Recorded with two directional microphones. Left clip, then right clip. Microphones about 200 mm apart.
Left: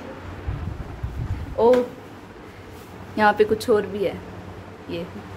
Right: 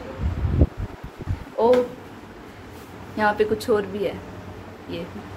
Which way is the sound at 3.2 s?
25° left (ahead or behind).